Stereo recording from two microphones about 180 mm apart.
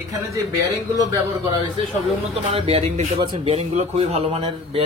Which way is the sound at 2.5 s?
35° right (ahead or behind).